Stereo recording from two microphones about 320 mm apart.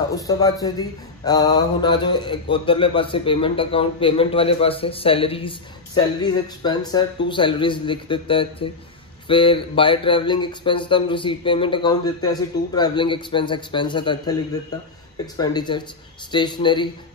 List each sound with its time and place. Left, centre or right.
0.1 s speech: centre